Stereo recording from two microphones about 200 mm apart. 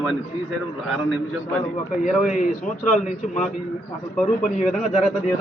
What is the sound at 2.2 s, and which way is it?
A man's voice, 40° left (ahead or behind).